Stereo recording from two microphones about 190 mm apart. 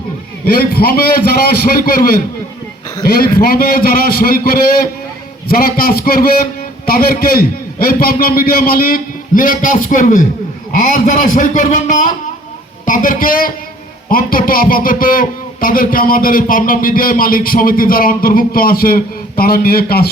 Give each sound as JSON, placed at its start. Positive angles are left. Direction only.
{"t": 0.5, "sound": "a man's voice", "side_deg": 50}
{"t": 3.4, "sound": "a man's voice", "side_deg": 50}